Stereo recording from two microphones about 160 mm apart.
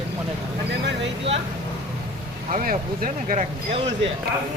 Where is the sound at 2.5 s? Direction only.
55° right (ahead or behind).